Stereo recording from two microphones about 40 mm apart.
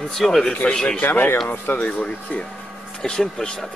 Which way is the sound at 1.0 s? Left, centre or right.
Left.